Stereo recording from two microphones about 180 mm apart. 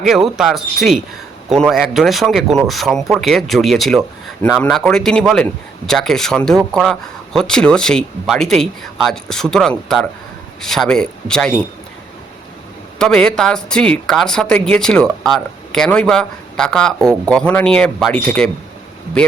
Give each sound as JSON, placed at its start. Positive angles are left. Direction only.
{"t": 0.0, "sound": "speech", "side_deg": 0}
{"t": 13.0, "sound": "speech", "side_deg": 5}